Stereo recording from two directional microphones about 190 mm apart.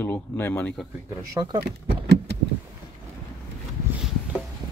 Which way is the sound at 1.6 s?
60° right (ahead or behind).